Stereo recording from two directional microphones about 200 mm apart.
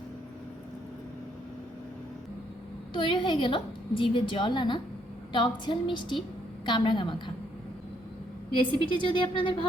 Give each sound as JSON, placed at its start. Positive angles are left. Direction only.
{"t": 2.9, "sound": "a woman's voice", "side_deg": 25}
{"t": 8.9, "sound": "a woman's voice", "side_deg": 25}